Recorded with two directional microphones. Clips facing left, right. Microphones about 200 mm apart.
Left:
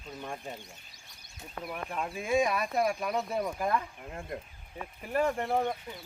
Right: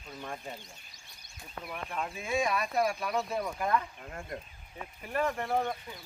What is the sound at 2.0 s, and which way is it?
Speech, 10° left (ahead or behind).